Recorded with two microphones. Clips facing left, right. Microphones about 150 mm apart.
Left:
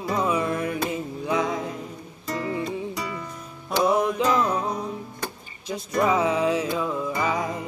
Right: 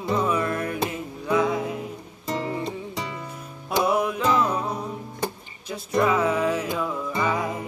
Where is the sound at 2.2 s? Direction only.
25° right (ahead or behind).